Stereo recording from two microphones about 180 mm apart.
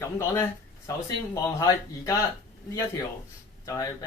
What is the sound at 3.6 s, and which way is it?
Speech, 20° left (ahead or behind).